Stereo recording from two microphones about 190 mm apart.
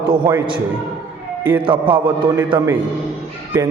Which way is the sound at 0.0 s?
25° right (ahead or behind).